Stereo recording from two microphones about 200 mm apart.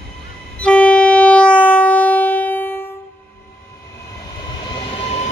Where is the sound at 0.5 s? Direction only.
5° left (ahead or behind).